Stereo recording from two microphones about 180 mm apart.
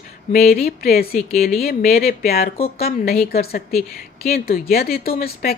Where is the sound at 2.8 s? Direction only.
55° left (ahead or behind).